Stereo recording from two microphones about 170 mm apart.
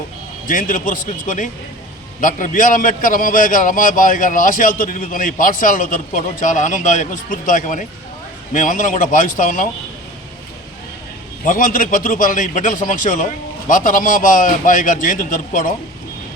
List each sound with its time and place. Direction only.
0.4 s a man's voice: 50° left (ahead or behind)
11.4 s a man's voice: 55° left (ahead or behind)